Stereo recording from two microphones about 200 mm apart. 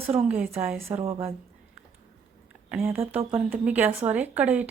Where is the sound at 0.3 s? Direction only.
5° right (ahead or behind).